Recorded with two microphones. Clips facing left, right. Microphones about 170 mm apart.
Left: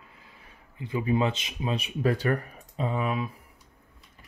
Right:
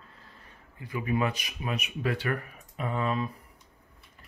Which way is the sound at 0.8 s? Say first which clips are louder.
Left 3 dB; 25° left (ahead or behind).